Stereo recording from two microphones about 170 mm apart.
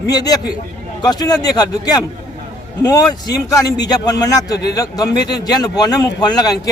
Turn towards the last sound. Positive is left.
turn(degrees=20)  # may be behind; listen again after turning